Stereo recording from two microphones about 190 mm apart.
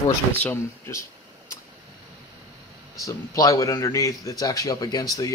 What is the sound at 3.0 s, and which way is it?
A man's voice, 15° left (ahead or behind).